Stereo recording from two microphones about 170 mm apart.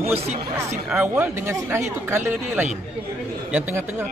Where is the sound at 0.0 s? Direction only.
40° right (ahead or behind).